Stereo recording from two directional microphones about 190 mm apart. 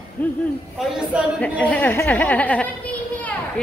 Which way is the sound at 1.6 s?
10° left (ahead or behind).